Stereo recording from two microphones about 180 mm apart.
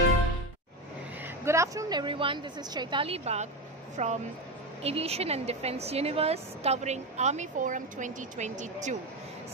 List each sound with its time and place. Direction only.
1.2 s a woman's voice: 15° right (ahead or behind); by 8.9 s 40° right (ahead or behind)